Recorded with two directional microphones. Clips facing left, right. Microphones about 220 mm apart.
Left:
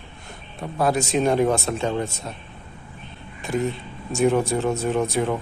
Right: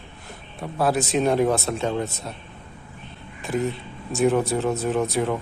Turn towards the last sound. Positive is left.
turn(degrees=0)  # may be behind; listen again after turning